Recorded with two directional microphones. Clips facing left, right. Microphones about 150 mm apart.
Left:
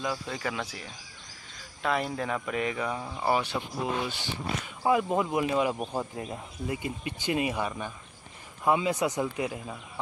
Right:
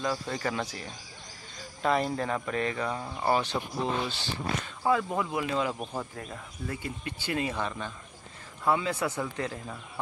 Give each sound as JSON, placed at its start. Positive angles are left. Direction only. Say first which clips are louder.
{"t": 0.0, "sound": "speech", "louder": "right 2 dB", "side_deg": 5}